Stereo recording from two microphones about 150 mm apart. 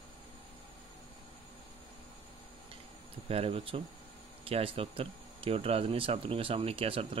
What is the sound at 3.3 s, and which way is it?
Speech, 40° right (ahead or behind).